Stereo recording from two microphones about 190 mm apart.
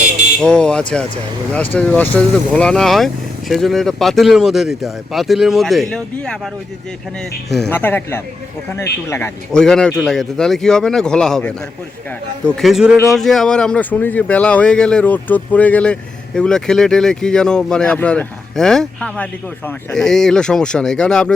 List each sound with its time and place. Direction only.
0.4 s speech: 5° left (ahead or behind)
7.5 s speech: 5° left (ahead or behind)